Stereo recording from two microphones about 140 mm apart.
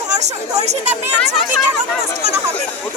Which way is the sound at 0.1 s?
55° right (ahead or behind).